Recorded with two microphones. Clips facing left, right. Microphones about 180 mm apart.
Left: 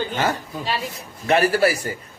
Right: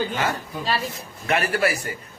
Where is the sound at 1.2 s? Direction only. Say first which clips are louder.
Left 5 dB; 35° left (ahead or behind).